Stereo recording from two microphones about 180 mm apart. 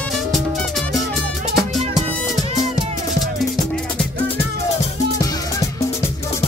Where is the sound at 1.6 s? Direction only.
Centre (ahead or behind).